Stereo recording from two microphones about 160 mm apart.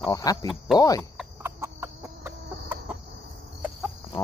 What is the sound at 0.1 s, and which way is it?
Speech, 25° left (ahead or behind).